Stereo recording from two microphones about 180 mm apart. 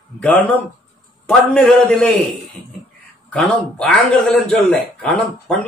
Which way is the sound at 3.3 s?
5° left (ahead or behind).